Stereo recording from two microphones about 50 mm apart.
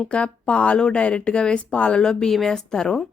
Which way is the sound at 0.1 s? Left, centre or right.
Left.